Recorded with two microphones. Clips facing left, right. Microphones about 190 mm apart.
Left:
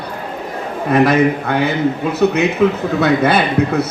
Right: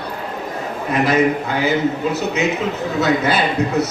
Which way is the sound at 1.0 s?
60° left (ahead or behind).